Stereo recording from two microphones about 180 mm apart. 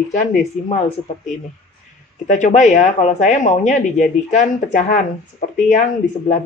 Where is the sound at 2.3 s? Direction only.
45° left (ahead or behind).